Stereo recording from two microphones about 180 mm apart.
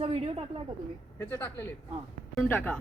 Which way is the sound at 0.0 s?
30° right (ahead or behind).